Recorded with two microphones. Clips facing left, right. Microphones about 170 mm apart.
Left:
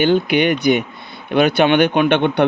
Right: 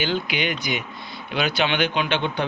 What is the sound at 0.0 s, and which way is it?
Speech, 55° left (ahead or behind).